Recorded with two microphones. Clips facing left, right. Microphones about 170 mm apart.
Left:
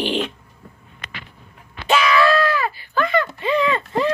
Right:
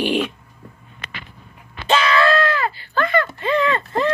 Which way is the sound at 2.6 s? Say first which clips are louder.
Even; 15° left (ahead or behind).